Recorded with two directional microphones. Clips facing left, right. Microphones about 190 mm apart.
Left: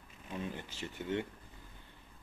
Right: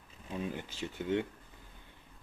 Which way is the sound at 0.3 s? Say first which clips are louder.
Right 3 dB; 15° right (ahead or behind).